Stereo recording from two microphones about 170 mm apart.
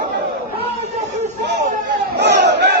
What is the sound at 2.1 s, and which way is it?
Battle cry, 85° right.